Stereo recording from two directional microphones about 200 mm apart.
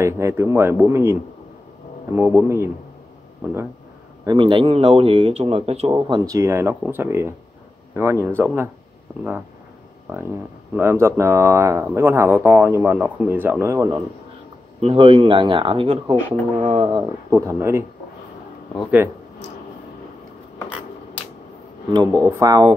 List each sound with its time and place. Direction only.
0.0 s speech: 15° right (ahead or behind)
2.1 s speech: 10° right (ahead or behind)
4.3 s speech: 25° right (ahead or behind)
10.8 s speech: 15° right (ahead or behind)
14.8 s speech: 30° right (ahead or behind)
17.3 s speech: 15° right (ahead or behind)
21.9 s speech: 15° right (ahead or behind)